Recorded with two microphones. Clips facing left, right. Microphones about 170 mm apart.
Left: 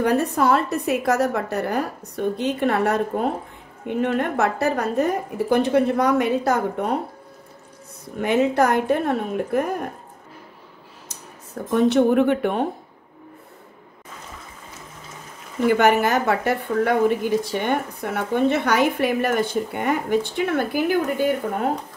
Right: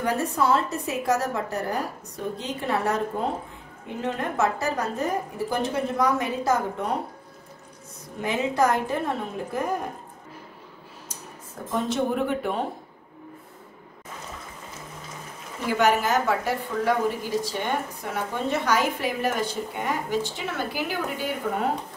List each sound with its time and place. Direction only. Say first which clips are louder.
0.0 s a woman's voice: left 5 dB; 65° left (ahead or behind)
8.2 s a woman's voice: left 5 dB; 65° left (ahead or behind)
11.7 s a woman's voice: left 9 dB; 65° left (ahead or behind)
15.6 s a woman's voice: left 5 dB; 60° left (ahead or behind)